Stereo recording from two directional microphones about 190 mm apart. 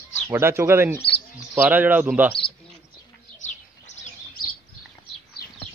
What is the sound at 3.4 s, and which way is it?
Bird, 40° left (ahead or behind).